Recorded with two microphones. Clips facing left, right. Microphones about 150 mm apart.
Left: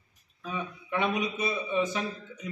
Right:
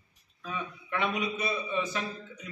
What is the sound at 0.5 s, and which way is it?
A man's voice, 20° left (ahead or behind).